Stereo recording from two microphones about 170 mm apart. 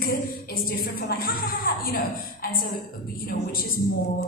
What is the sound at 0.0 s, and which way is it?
A woman's voice, 60° left (ahead or behind).